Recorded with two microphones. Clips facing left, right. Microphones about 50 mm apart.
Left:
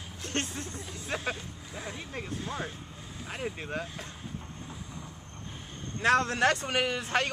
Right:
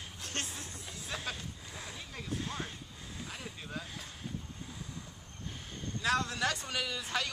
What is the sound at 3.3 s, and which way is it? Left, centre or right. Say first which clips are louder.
Speech: left 12 dB; left.